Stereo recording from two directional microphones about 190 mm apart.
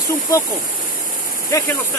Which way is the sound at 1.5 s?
15° left (ahead or behind).